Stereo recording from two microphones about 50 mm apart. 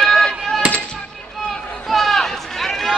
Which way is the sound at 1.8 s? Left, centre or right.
Centre.